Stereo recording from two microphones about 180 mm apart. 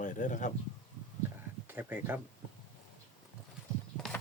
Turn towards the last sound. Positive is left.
turn(degrees=5)  # may be behind; listen again after turning